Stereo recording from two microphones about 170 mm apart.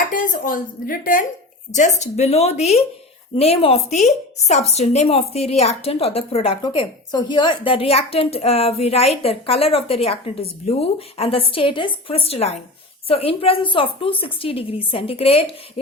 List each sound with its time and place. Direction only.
0.1 s speech: 55° left (ahead or behind); by 15.4 s 35° left (ahead or behind)